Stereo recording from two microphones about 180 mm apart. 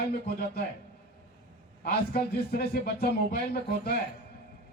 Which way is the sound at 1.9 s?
60° left (ahead or behind).